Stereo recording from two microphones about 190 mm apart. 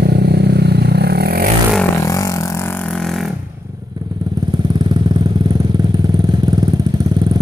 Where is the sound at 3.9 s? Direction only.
20° right (ahead or behind).